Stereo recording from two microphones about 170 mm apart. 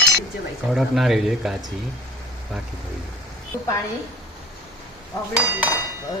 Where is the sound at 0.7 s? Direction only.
Centre (ahead or behind).